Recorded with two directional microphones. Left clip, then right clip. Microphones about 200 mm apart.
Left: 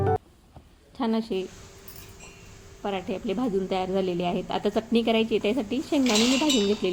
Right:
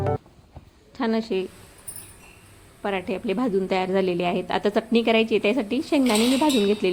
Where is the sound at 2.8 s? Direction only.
Centre (ahead or behind).